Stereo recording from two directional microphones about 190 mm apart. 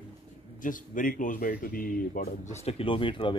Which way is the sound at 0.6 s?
45° left (ahead or behind).